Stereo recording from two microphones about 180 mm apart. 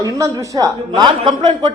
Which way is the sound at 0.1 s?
20° right (ahead or behind).